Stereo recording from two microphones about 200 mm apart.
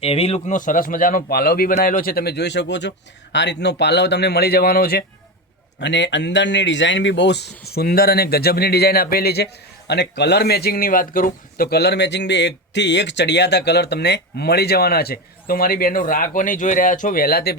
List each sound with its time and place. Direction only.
0.0 s a man's voice: 30° left (ahead or behind); by 5.0 s 50° left (ahead or behind)
5.8 s speech: 60° left (ahead or behind)